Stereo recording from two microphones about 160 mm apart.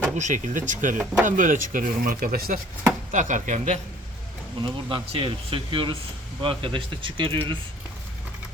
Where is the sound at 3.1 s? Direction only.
50° right (ahead or behind).